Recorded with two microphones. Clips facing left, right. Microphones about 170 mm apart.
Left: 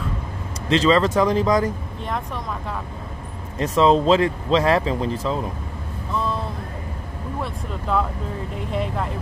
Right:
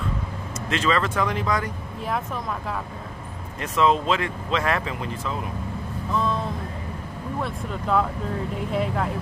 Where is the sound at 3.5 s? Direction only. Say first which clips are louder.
Left 4 dB; 35° left (ahead or behind).